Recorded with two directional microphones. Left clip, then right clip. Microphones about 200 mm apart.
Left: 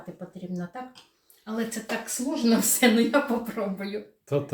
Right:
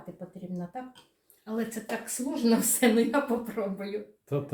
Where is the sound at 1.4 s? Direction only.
15° right (ahead or behind).